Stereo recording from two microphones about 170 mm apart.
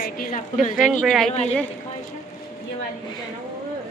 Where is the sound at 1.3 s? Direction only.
40° left (ahead or behind).